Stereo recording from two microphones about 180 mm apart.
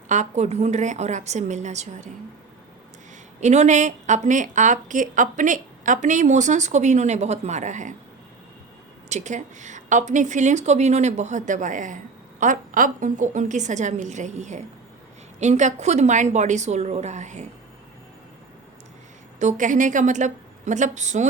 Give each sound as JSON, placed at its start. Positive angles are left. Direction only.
{"t": 0.1, "sound": "a woman's voice", "side_deg": -40}
{"t": 3.4, "sound": "a woman's voice", "side_deg": -40}
{"t": 9.0, "sound": "a woman's voice", "side_deg": -40}
{"t": 19.4, "sound": "a woman's voice", "side_deg": -45}